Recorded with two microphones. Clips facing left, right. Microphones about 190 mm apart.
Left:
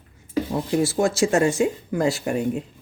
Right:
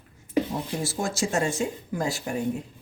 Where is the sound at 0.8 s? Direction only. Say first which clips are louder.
Left 10 dB; 70° left (ahead or behind).